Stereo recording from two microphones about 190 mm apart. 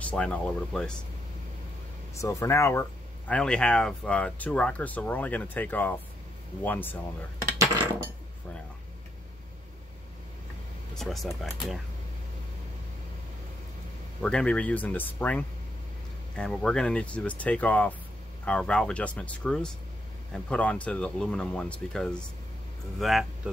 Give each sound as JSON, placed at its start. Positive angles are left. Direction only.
{"t": 0.0, "sound": "speech", "side_deg": 5}
{"t": 2.1, "sound": "speech", "side_deg": 15}
{"t": 11.0, "sound": "speech", "side_deg": 0}
{"t": 14.2, "sound": "speech", "side_deg": 5}